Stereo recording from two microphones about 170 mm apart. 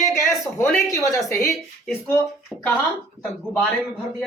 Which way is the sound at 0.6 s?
15° left (ahead or behind).